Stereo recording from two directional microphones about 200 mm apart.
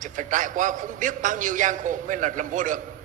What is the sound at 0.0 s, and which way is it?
A man's voice, 40° right (ahead or behind).